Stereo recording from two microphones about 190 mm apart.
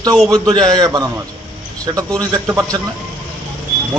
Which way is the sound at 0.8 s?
20° right (ahead or behind).